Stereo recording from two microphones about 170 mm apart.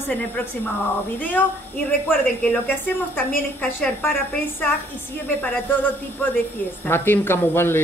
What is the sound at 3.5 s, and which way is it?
A woman's voice, 10° left (ahead or behind).